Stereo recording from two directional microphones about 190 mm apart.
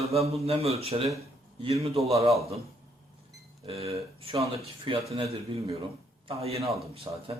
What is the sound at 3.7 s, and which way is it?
Speech, 30° right (ahead or behind).